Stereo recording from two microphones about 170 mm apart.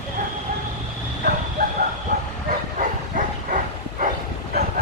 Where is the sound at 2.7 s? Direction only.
50° right (ahead or behind).